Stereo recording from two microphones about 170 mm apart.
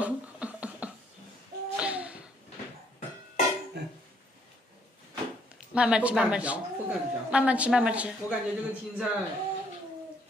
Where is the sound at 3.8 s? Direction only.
80° right.